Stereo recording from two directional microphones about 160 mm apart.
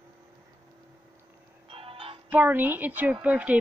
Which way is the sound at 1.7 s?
35° right (ahead or behind).